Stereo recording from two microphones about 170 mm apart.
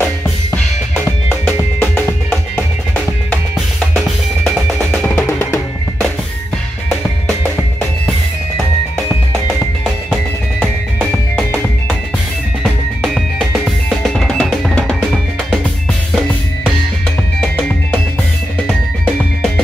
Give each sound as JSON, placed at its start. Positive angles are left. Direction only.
{"t": 1.4, "sound": "music", "side_deg": 0}
{"t": 5.0, "sound": "music", "side_deg": 15}
{"t": 13.0, "sound": "drum", "side_deg": 0}
{"t": 17.4, "sound": "music", "side_deg": 5}